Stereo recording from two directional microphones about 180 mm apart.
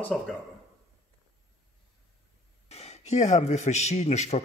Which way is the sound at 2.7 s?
35° left (ahead or behind).